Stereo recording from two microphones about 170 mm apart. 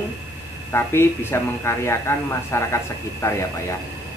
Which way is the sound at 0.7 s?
15° left (ahead or behind).